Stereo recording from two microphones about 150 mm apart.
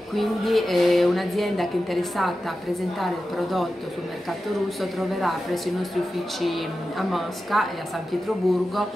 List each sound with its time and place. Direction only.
0.1 s speech: centre (ahead or behind)
4.9 s speech: centre (ahead or behind)